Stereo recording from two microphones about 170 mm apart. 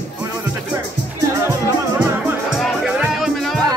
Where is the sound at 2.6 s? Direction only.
5° right (ahead or behind).